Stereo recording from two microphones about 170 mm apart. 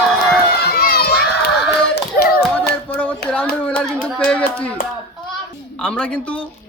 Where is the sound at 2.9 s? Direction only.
10° left (ahead or behind).